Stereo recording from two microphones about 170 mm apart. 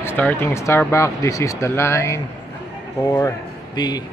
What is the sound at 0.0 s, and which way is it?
A man's voice, 10° left (ahead or behind).